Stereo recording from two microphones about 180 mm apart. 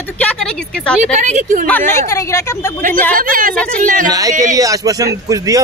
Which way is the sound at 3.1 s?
50° right (ahead or behind).